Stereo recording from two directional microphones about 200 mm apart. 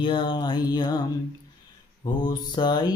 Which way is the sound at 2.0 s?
20° left (ahead or behind).